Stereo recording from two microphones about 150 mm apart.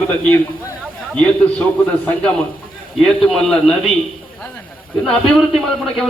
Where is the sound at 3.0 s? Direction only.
Centre (ahead or behind).